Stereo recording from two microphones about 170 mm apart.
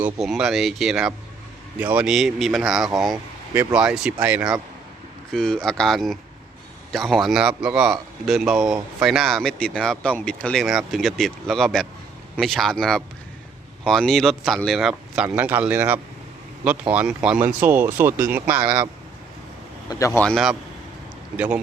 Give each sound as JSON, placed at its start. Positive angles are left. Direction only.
{"t": 0.0, "sound": "speech", "side_deg": -5}
{"t": 5.3, "sound": "speech", "side_deg": 5}
{"t": 19.9, "sound": "speech", "side_deg": 20}
{"t": 20.2, "sound": "speech", "side_deg": 0}